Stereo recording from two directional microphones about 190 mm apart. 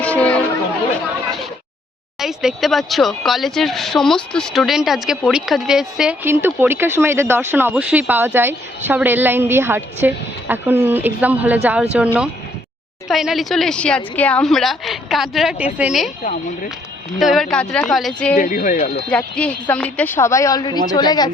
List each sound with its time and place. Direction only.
0.0 s music: 5° left (ahead or behind)
2.1 s speech: 5° right (ahead or behind)
17.2 s speech: centre (ahead or behind)
18.3 s speech: 45° left (ahead or behind)
19.0 s a woman's voice: 5° left (ahead or behind); by 21.3 s 20° left (ahead or behind)